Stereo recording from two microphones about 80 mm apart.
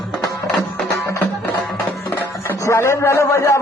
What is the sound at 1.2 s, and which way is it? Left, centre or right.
Music, centre.